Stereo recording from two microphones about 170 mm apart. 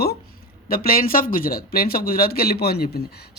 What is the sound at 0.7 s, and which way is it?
A woman's voice, 60° left (ahead or behind).